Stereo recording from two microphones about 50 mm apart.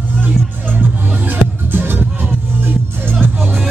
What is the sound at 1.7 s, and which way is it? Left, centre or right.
Music, right.